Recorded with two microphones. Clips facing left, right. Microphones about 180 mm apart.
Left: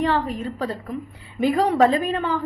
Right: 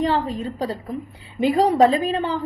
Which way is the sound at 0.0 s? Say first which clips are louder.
Right 1 dB; 30° right (ahead or behind).